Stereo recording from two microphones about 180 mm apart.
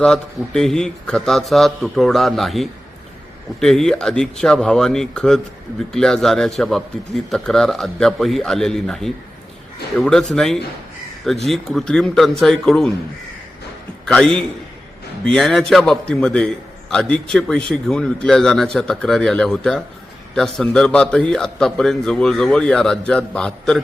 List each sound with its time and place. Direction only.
0.0 s a man's voice: 5° left (ahead or behind)
14.0 s a man's voice: 5° left (ahead or behind)